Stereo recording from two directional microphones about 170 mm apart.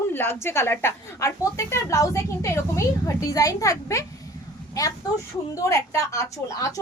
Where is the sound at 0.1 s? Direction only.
15° left (ahead or behind).